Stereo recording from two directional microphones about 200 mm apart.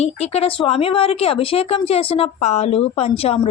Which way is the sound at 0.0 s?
30° left (ahead or behind).